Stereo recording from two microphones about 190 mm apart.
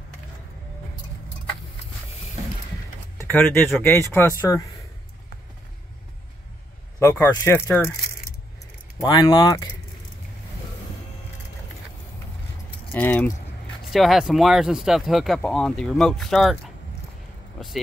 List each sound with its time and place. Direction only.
3.2 s speech: 10° left (ahead or behind)
7.0 s speech: 15° left (ahead or behind)
8.9 s speech: 20° left (ahead or behind)
12.9 s speech: 10° left (ahead or behind)